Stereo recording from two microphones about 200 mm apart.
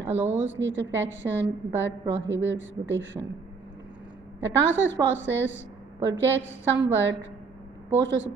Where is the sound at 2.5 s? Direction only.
65° right (ahead or behind).